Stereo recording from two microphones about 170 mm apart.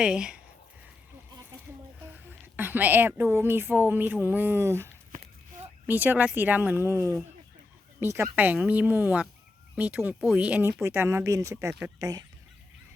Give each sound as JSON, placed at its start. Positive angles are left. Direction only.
{"t": 0.0, "sound": "speech", "side_deg": -5}
{"t": 2.6, "sound": "speech", "side_deg": -10}
{"t": 8.0, "sound": "speech", "side_deg": -15}